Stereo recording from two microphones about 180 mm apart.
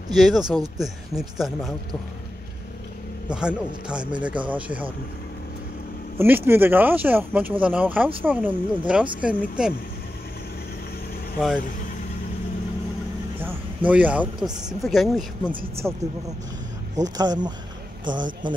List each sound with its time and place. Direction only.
0.1 s speech: centre (ahead or behind)
3.3 s speech: 5° right (ahead or behind)
6.1 s speech: 10° right (ahead or behind)
11.3 s speech: 5° right (ahead or behind)
13.4 s a sound: 10° right (ahead or behind)
14.7 s speech: centre (ahead or behind)
16.9 s a man's voice: 20° right (ahead or behind)